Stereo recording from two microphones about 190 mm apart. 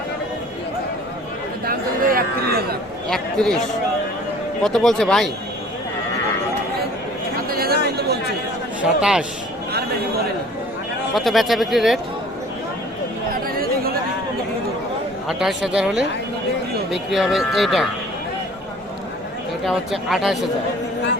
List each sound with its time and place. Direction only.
1.6 s a sound: 50° right (ahead or behind)
3.1 s speech: 5° left (ahead or behind)
4.6 s speech: centre (ahead or behind)
7.5 s a sound: 55° right (ahead or behind)
7.9 s chatter: 55° right (ahead or behind)
8.8 s speech: 5° right (ahead or behind)
11.1 s speech: centre (ahead or behind)
13.6 s a sound: 50° right (ahead or behind)
15.3 s speech: centre (ahead or behind)
19.6 s speech: centre (ahead or behind)